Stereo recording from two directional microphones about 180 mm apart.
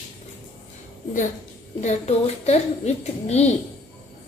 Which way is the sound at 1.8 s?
40° left (ahead or behind).